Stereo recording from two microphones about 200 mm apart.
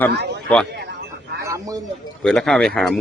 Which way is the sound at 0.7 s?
55° right (ahead or behind).